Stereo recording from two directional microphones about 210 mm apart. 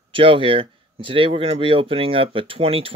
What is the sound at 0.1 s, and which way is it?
Speech, 25° right (ahead or behind).